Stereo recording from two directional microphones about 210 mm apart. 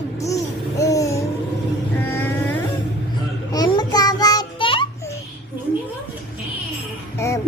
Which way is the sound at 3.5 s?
20° left (ahead or behind).